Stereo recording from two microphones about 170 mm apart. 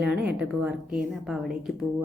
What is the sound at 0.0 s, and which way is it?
Speech, 5° right (ahead or behind).